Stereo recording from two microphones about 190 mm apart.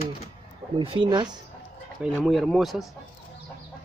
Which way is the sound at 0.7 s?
25° right (ahead or behind).